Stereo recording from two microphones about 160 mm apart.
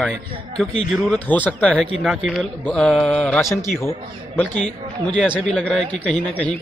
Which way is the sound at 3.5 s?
20° left (ahead or behind).